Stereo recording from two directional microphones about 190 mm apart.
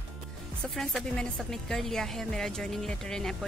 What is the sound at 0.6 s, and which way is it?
A woman's voice, centre (ahead or behind).